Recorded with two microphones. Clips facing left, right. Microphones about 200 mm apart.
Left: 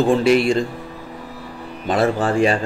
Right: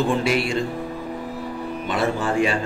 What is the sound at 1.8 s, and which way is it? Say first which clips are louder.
Speech: left 5 dB; 35° left (ahead or behind).